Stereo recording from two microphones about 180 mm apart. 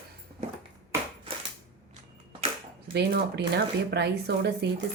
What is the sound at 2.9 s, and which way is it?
Speech, 65° right (ahead or behind).